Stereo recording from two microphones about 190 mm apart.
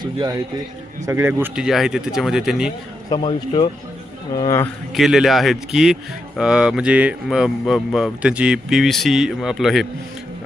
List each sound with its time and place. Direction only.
0.0 s a man's voice: 20° right (ahead or behind); by 2.7 s 5° right (ahead or behind)
3.1 s a man's voice: 25° left (ahead or behind)
4.9 s speech: centre (ahead or behind)